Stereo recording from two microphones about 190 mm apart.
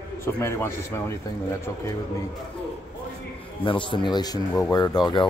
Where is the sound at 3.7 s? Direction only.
25° left (ahead or behind).